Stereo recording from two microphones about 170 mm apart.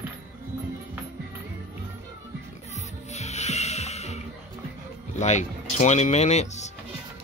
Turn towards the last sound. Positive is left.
turn(degrees=40)  # may be behind; listen again after turning